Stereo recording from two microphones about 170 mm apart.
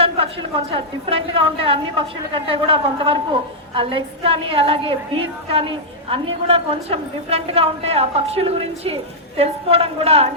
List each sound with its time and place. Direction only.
0.0 s a woman's voice: 35° right (ahead or behind)